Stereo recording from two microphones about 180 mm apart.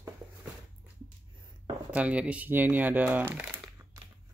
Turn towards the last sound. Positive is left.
turn(degrees=-10)  # may be behind; listen again after turning